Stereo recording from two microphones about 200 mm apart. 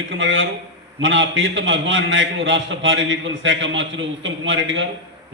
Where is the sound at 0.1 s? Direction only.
70° right (ahead or behind).